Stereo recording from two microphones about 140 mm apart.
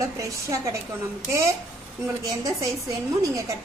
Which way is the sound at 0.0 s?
25° right (ahead or behind).